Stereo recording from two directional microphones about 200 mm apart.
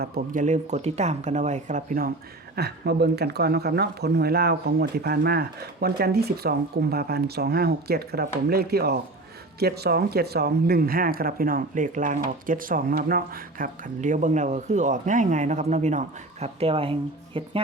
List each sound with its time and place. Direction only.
0.0 s speech: 40° right (ahead or behind); by 17.5 s 25° right (ahead or behind)